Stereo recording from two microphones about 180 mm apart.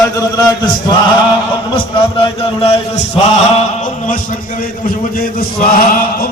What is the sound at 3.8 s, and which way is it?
A man's voice, 45° left (ahead or behind).